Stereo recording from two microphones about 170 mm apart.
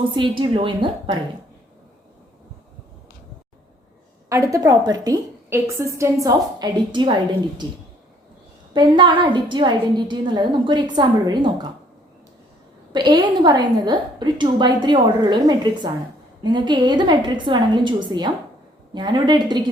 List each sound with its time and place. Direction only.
0.2 s a woman's voice: 30° right (ahead or behind)
4.3 s a woman's voice: 20° right (ahead or behind)
8.7 s a woman's voice: 25° right (ahead or behind)
12.9 s a woman's voice: 25° right (ahead or behind)